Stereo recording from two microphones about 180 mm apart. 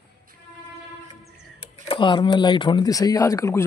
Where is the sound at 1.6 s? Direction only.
30° left (ahead or behind).